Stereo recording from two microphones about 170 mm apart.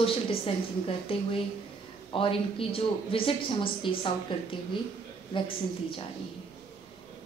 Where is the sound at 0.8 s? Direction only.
35° left (ahead or behind).